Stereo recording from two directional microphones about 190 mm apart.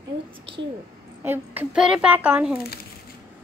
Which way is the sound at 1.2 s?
5° right (ahead or behind).